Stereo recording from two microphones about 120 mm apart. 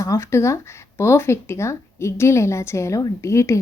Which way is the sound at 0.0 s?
25° left (ahead or behind).